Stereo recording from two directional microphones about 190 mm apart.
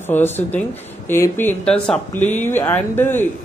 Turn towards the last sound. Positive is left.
turn(degrees=10)  # may be behind; listen again after turning